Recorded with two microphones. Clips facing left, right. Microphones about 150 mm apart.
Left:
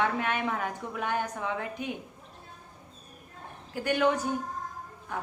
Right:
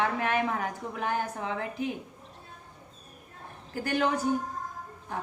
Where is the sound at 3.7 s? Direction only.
35° right (ahead or behind).